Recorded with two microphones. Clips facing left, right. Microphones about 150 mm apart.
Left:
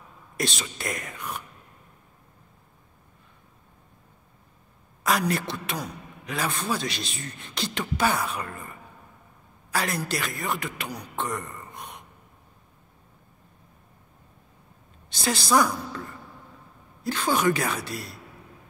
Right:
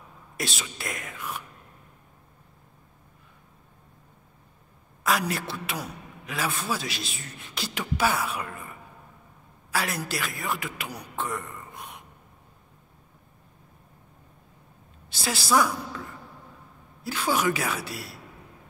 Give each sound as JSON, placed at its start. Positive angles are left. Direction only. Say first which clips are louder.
{"t": 0.4, "sound": "a man's voice", "louder": "left 3 dB", "side_deg": -5}
{"t": 5.0, "sound": "a man's voice", "louder": "left 2 dB", "side_deg": -5}
{"t": 15.0, "sound": "a man's voice", "louder": "left 2 dB", "side_deg": -5}
{"t": 17.0, "sound": "a man's voice", "louder": "left 2 dB", "side_deg": -10}